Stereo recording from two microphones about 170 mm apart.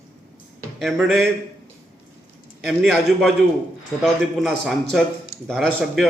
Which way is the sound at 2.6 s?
Centre (ahead or behind).